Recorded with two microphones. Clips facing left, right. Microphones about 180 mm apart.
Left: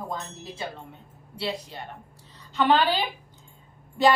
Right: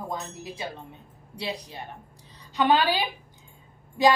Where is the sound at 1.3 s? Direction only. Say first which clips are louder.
Left 2 dB; 15° right (ahead or behind).